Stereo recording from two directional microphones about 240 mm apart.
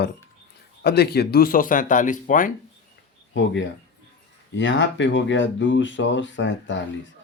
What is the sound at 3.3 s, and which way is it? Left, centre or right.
Speech, left.